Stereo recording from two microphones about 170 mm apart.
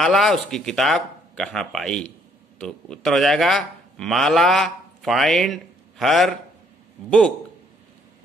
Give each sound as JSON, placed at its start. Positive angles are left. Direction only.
{"t": 0.0, "sound": "a man's voice", "side_deg": 0}